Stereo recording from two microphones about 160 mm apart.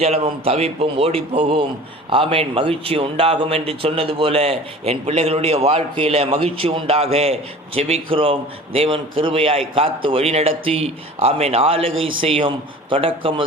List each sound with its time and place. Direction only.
0.0 s a man's voice: 40° right (ahead or behind)